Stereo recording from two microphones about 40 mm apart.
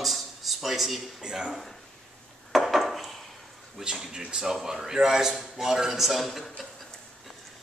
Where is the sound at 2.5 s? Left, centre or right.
Centre.